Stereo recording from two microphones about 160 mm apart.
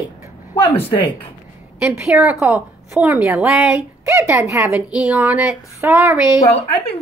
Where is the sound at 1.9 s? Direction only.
15° right (ahead or behind).